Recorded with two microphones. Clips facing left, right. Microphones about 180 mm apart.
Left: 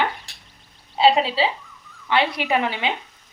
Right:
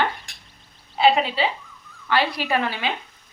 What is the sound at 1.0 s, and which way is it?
Speech, 30° left (ahead or behind).